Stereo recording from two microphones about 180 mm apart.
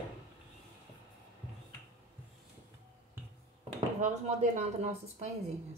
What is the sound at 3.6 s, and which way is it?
Speech, 40° right (ahead or behind).